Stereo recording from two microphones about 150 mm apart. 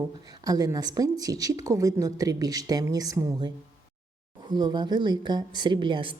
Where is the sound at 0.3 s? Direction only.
25° right (ahead or behind).